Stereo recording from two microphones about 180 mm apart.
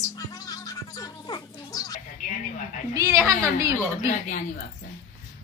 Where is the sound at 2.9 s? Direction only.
15° right (ahead or behind).